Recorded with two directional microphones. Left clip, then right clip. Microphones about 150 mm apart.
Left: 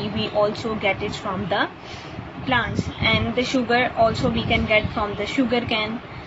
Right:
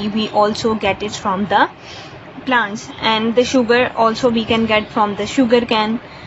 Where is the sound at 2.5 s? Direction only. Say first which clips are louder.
Right 6 dB; 25° right (ahead or behind).